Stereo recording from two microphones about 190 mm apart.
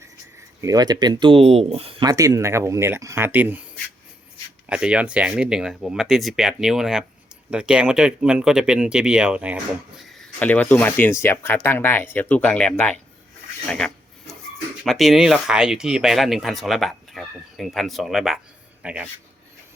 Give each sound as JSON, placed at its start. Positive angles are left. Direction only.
{"t": 0.3, "sound": "speech", "side_deg": -15}
{"t": 10.1, "sound": "a man's voice", "side_deg": 5}